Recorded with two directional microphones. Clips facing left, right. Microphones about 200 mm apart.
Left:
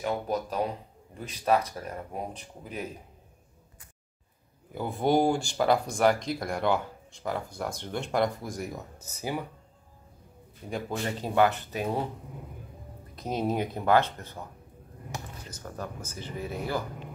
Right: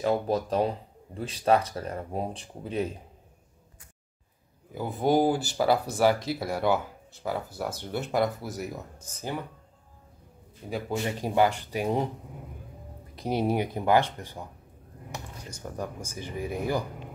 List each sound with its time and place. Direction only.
0.0 s speech: 30° right (ahead or behind)
4.7 s speech: centre (ahead or behind)
11.1 s speech: 15° right (ahead or behind)
13.2 s speech: 10° right (ahead or behind)
15.5 s speech: 15° right (ahead or behind)